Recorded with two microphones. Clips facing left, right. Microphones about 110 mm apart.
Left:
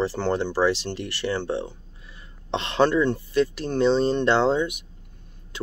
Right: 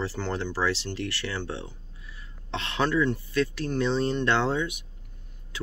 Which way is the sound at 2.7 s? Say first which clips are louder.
Left 5 dB; 25° left (ahead or behind).